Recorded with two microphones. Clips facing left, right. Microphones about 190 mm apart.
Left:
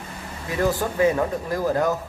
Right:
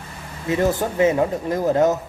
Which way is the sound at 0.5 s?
20° right (ahead or behind).